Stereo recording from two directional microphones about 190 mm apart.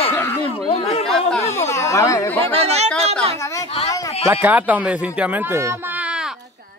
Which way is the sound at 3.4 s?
15° left (ahead or behind).